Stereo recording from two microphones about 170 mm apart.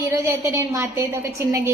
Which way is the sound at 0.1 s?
15° right (ahead or behind).